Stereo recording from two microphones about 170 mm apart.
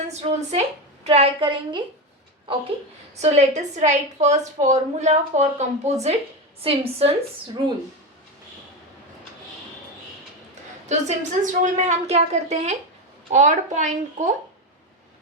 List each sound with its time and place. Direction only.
0.1 s a woman's voice: 40° right (ahead or behind)
3.2 s a woman's voice: 40° right (ahead or behind)
10.8 s a woman's voice: 45° right (ahead or behind)